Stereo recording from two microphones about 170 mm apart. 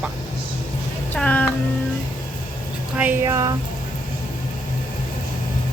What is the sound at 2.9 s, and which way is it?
Speech, 10° right (ahead or behind).